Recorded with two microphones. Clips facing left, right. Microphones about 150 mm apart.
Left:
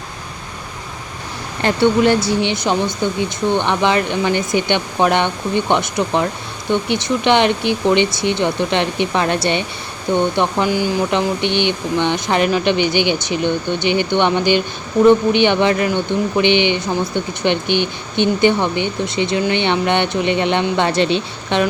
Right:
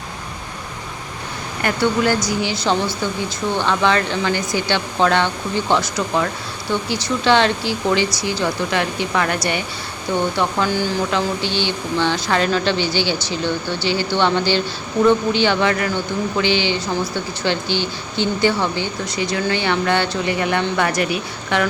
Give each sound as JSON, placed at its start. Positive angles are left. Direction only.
{"t": 1.6, "sound": "speech", "side_deg": 25}